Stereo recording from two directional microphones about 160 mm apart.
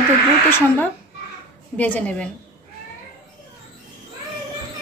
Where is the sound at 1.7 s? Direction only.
10° left (ahead or behind).